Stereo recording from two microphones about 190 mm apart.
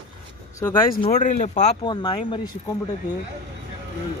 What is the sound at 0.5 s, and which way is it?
Speech, 15° left (ahead or behind).